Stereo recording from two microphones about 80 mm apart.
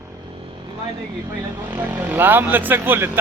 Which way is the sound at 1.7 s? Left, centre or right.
Right.